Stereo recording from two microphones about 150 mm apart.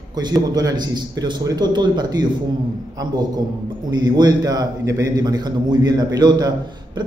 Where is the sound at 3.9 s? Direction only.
25° right (ahead or behind).